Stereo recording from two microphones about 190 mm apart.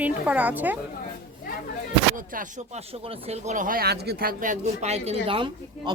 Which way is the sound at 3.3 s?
40° right (ahead or behind).